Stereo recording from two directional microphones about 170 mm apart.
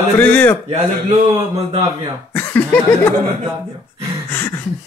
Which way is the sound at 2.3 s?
10° left (ahead or behind).